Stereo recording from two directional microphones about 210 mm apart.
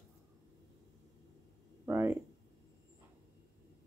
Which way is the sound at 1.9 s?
15° right (ahead or behind).